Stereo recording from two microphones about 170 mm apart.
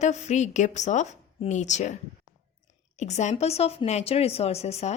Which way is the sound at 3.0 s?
40° left (ahead or behind).